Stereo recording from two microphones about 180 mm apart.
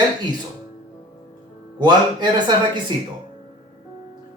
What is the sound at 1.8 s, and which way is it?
Speech, 25° right (ahead or behind).